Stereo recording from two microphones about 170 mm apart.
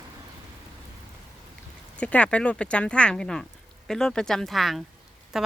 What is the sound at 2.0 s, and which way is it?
Speech, 10° left (ahead or behind).